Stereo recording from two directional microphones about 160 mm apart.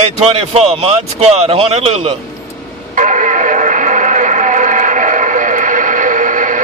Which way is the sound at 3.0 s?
50° right (ahead or behind).